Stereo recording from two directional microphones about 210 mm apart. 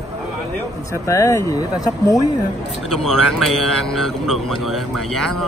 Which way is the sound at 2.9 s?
Centre (ahead or behind).